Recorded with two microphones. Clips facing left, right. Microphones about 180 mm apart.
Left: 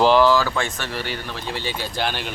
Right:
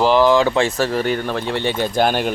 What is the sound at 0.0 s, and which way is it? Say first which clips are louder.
Speech: right 2 dB; 15° right (ahead or behind).